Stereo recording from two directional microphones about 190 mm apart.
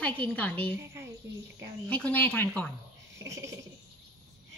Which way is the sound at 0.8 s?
15° right (ahead or behind).